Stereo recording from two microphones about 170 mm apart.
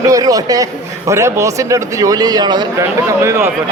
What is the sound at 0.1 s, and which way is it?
A man's voice, 20° right (ahead or behind).